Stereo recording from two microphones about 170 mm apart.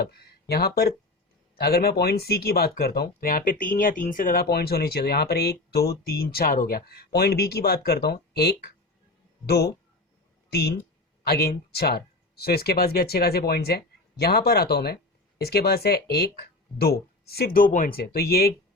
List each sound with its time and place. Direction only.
0.0 s speech: 65° left (ahead or behind)
11.2 s speech: 65° left (ahead or behind)